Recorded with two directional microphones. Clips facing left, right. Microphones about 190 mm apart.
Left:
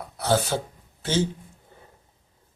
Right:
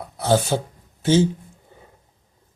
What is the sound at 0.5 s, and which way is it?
Mantra, 25° right (ahead or behind).